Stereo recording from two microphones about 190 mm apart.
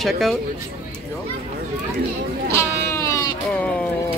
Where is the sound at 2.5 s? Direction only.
15° left (ahead or behind).